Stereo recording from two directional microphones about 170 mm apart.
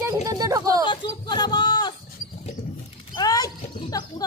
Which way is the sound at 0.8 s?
25° left (ahead or behind).